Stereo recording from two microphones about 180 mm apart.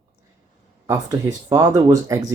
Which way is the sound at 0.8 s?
15° right (ahead or behind).